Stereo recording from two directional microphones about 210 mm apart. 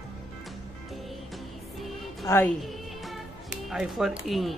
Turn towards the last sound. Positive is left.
turn(degrees=0)  # may be behind; listen again after turning